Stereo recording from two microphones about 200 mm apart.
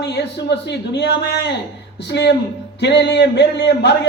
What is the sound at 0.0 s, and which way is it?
A man's voice, 60° left (ahead or behind).